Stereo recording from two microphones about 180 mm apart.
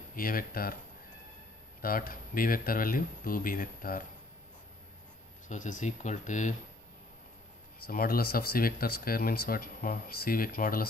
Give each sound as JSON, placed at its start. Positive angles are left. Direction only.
{"t": 0.1, "sound": "speech", "side_deg": 50}
{"t": 1.8, "sound": "speech", "side_deg": 50}
{"t": 5.5, "sound": "speech", "side_deg": 45}
{"t": 7.8, "sound": "speech", "side_deg": 55}